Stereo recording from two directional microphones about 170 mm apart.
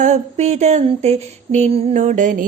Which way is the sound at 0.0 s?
40° right (ahead or behind).